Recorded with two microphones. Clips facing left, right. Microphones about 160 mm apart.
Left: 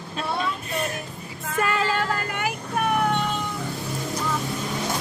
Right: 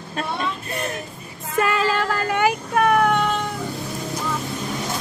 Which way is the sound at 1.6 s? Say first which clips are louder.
Right 3 dB; 90° right.